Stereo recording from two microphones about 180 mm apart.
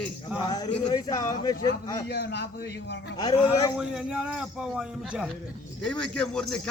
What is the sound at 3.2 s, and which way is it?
Speech, 20° left (ahead or behind).